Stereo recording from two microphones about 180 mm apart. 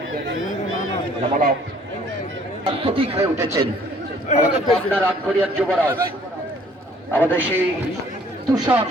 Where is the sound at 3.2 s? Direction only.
15° right (ahead or behind).